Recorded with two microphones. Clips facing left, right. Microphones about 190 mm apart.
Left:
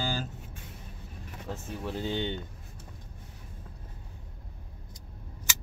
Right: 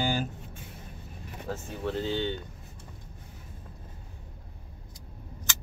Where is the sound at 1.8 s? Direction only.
20° left (ahead or behind).